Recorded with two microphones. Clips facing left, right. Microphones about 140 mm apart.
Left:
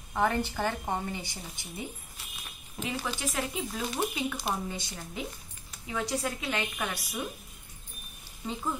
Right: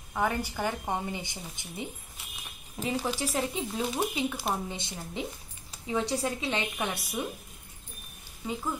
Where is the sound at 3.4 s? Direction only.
25° right (ahead or behind).